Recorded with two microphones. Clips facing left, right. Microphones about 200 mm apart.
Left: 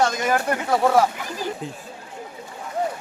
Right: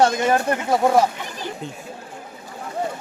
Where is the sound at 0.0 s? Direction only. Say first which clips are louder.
Right 3 dB; 30° right (ahead or behind).